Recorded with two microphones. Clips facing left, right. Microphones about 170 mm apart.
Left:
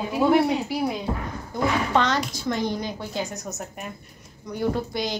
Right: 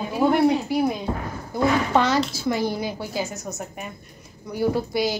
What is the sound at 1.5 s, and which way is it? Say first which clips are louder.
A woman's voice: right 3 dB; 5° right (ahead or behind).